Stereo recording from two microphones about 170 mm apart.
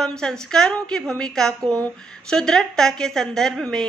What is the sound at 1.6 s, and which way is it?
Speech, 20° right (ahead or behind).